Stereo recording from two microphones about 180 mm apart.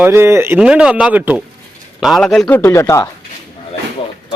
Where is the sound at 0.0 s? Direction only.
15° right (ahead or behind); by 2.6 s 5° left (ahead or behind).